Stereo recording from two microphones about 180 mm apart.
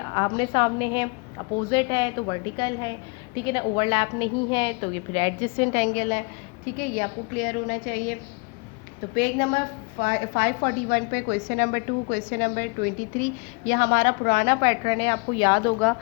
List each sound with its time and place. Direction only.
0.0 s a woman's voice: 25° left (ahead or behind); by 8.1 s 45° left (ahead or behind)
9.1 s a woman's voice: 45° left (ahead or behind); by 15.7 s 25° left (ahead or behind)